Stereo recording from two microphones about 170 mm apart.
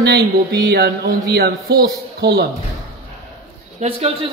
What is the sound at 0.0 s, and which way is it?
Music, 90° right.